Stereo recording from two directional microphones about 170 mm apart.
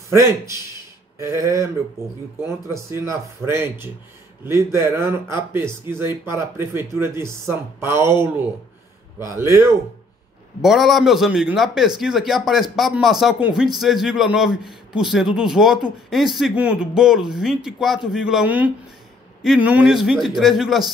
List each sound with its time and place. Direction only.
1.1 s speech: 20° right (ahead or behind)
9.3 s speech: 15° right (ahead or behind)
10.6 s speech: centre (ahead or behind)